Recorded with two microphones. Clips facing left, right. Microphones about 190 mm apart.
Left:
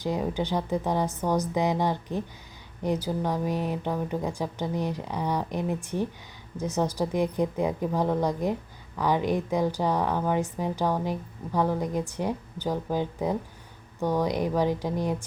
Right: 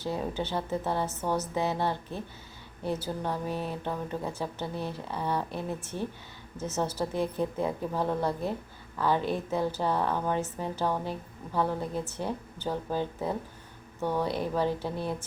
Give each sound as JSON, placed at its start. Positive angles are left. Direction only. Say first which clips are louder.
{"t": 0.0, "sound": "a woman's voice", "louder": "left 4 dB", "side_deg": 15}